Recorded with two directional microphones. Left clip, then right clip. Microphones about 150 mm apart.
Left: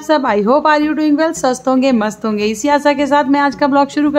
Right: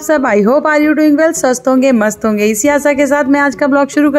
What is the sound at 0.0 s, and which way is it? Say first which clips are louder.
A woman's voice: right 3 dB; 30° right (ahead or behind).